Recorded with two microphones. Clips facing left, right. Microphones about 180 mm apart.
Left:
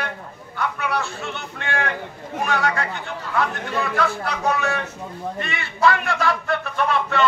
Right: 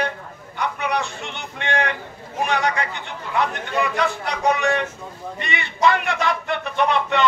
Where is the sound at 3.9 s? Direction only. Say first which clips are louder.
Even; 20° right (ahead or behind).